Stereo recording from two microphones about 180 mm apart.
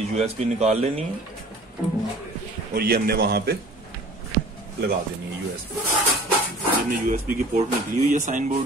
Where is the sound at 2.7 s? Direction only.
55° right (ahead or behind).